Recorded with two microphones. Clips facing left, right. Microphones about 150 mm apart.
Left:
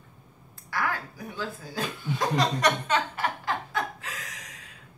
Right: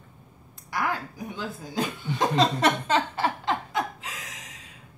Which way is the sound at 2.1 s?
25° right (ahead or behind).